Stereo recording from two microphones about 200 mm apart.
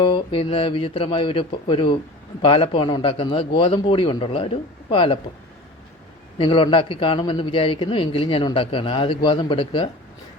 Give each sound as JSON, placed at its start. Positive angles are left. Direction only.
{"t": 0.0, "sound": "a man's voice", "side_deg": 25}
{"t": 6.4, "sound": "a man's voice", "side_deg": 25}